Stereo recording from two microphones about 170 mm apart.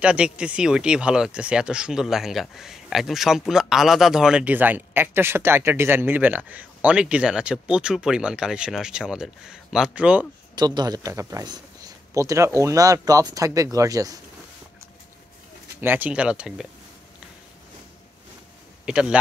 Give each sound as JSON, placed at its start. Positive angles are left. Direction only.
{"t": 0.0, "sound": "speech", "side_deg": -5}
{"t": 10.5, "sound": "a man's voice", "side_deg": -25}
{"t": 15.8, "sound": "speech", "side_deg": -10}
{"t": 18.9, "sound": "speech", "side_deg": -5}